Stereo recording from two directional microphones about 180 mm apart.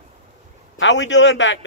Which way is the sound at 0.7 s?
90° left.